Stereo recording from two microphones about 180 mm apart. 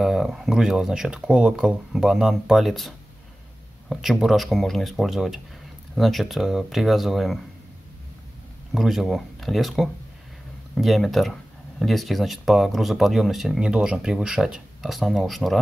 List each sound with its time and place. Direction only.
0.0 s speech: centre (ahead or behind)
3.9 s speech: centre (ahead or behind)
8.7 s speech: centre (ahead or behind)